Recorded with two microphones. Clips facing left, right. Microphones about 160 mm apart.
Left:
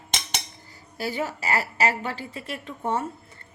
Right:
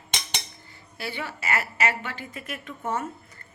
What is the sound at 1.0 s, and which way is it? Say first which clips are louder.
A woman's voice: left 5 dB; 40° left (ahead or behind).